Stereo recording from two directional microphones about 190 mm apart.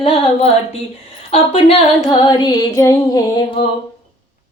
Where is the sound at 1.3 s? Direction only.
35° left (ahead or behind).